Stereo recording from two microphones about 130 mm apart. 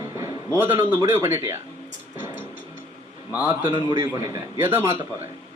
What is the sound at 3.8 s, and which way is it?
Speech, 35° right (ahead or behind).